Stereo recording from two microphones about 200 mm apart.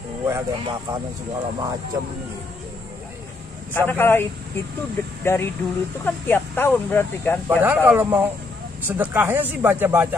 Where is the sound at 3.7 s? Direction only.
10° left (ahead or behind).